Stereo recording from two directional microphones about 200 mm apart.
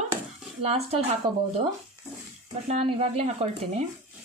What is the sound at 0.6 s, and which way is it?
Speech, 30° right (ahead or behind).